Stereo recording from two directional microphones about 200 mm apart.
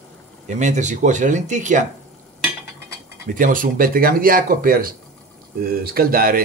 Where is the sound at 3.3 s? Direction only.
40° right (ahead or behind).